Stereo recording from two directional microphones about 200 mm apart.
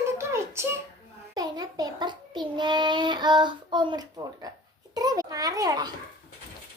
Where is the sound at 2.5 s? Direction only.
20° right (ahead or behind).